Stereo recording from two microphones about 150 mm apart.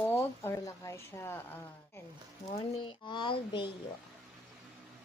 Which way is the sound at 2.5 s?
40° left (ahead or behind).